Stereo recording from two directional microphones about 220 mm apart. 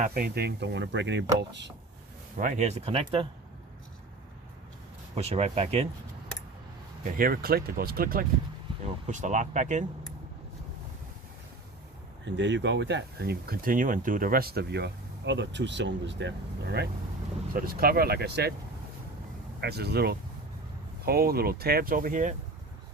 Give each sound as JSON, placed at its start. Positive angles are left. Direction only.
{"t": 0.0, "sound": "speech", "side_deg": -45}
{"t": 2.4, "sound": "speech", "side_deg": -35}
{"t": 5.1, "sound": "speech", "side_deg": -25}
{"t": 7.2, "sound": "speech", "side_deg": -45}
{"t": 8.8, "sound": "speech", "side_deg": -30}
{"t": 12.2, "sound": "speech", "side_deg": -55}
{"t": 19.6, "sound": "speech", "side_deg": -45}